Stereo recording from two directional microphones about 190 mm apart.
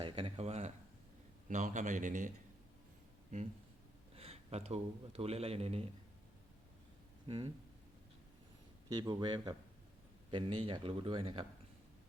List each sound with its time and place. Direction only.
0.0 s a sound: 30° right (ahead or behind)
1.5 s a man's voice: 40° right (ahead or behind)
4.1 s speech: 30° right (ahead or behind)
7.3 s a man's voice: 30° right (ahead or behind)
8.9 s speech: 20° right (ahead or behind)